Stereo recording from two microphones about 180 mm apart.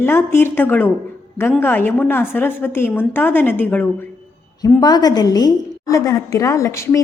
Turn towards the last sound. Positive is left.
turn(degrees=15)  # may be behind; listen again after turning